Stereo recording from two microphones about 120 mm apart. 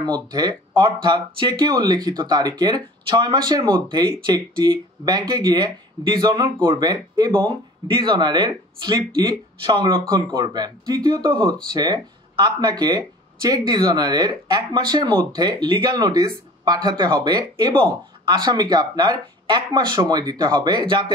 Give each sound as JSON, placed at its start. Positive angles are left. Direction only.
{"t": 0.0, "sound": "speech", "side_deg": -35}